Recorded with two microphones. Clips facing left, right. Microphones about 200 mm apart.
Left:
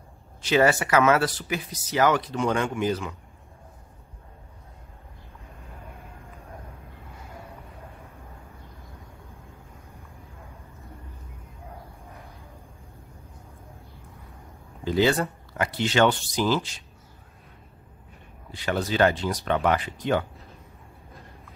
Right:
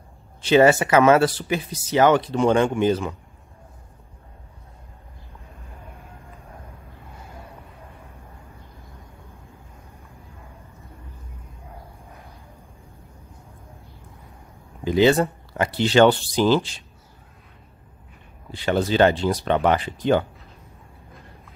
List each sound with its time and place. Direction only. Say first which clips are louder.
0.4 s speech: right 6 dB; 25° right (ahead or behind)
14.9 s speech: right 5 dB; 20° right (ahead or behind)
18.5 s speech: right 5 dB; 30° right (ahead or behind)